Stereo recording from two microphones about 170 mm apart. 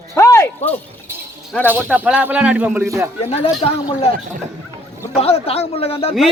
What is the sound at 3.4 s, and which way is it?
Speech, 35° left (ahead or behind).